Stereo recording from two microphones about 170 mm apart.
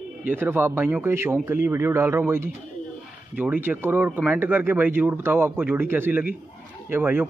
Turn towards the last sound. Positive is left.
turn(degrees=-10)  # may be behind; listen again after turning